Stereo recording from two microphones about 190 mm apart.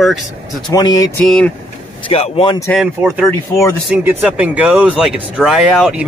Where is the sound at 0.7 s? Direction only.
20° left (ahead or behind).